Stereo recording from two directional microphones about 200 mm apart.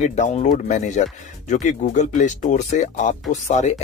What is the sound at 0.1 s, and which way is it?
Speech, 35° left (ahead or behind).